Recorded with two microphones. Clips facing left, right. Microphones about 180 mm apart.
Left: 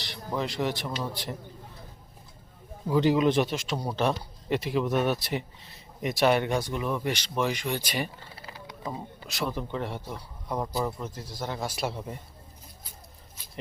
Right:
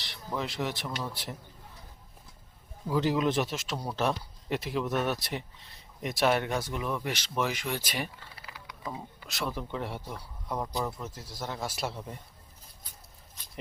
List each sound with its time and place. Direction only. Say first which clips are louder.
0.0 s speech: left 3 dB; centre (ahead or behind)
2.9 s speech: left 4 dB; centre (ahead or behind)
8.4 s a sound: left 6 dB; 30° left (ahead or behind)
8.9 s speech: left 3 dB; centre (ahead or behind)
10.1 s speech: left 2 dB; 5° left (ahead or behind)